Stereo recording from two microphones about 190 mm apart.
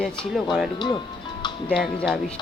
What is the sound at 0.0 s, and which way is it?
Speech, 5° left (ahead or behind).